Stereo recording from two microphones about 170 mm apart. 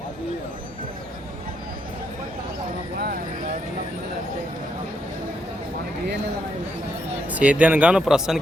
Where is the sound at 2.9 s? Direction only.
60° right (ahead or behind).